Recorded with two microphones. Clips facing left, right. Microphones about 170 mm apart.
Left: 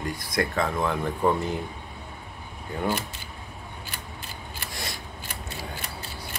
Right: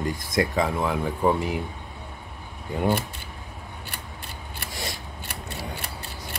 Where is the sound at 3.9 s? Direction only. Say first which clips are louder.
Right 1 dB; 65° right (ahead or behind).